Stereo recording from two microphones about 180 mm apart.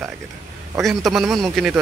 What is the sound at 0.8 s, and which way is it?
Speech, centre (ahead or behind).